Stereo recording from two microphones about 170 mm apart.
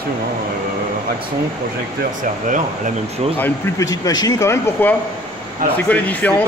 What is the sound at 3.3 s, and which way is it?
Speech, 15° left (ahead or behind).